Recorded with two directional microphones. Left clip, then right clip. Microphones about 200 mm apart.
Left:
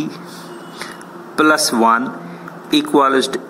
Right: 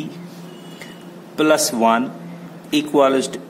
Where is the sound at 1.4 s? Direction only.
Centre (ahead or behind).